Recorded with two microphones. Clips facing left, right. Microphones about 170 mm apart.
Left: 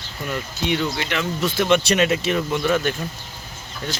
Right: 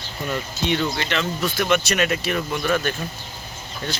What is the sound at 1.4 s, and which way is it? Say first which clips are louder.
Speech: left 4 dB; 25° left (ahead or behind).